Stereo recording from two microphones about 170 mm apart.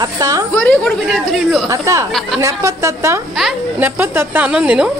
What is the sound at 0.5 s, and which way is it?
A woman's voice, 5° left (ahead or behind).